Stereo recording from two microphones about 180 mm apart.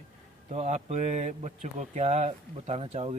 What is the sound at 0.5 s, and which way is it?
Speech, 40° right (ahead or behind).